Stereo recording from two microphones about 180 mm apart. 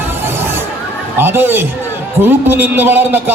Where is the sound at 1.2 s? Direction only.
10° right (ahead or behind).